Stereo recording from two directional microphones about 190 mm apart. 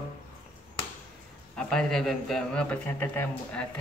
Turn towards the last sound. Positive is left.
turn(degrees=10)  # may be behind; listen again after turning